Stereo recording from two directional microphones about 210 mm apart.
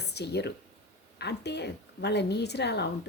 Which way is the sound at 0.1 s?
50° left (ahead or behind).